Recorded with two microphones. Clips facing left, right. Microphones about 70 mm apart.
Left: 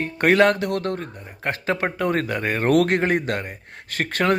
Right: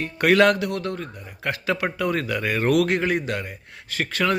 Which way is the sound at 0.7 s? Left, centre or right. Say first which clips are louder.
Left 3 dB; left.